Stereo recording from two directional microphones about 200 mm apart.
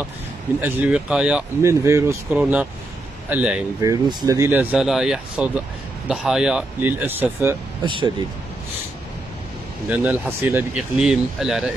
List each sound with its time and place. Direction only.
0.6 s speech: 10° right (ahead or behind)
3.8 s speech: 20° right (ahead or behind)
7.8 s speech: 25° right (ahead or behind)
9.8 s speech: 5° right (ahead or behind)